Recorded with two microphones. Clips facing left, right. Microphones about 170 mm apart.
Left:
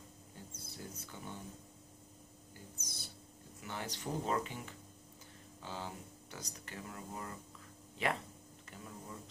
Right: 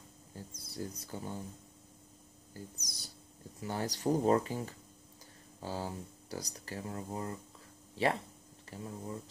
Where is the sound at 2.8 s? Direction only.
40° right (ahead or behind).